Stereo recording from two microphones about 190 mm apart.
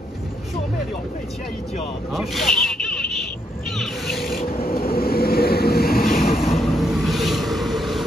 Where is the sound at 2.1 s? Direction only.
Centre (ahead or behind).